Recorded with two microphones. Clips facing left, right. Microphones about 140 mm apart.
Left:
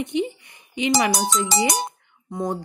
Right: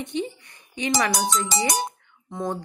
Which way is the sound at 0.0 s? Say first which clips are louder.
Left 4 dB; 15° left (ahead or behind).